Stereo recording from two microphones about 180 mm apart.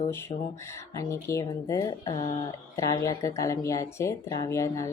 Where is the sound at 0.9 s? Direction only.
15° left (ahead or behind).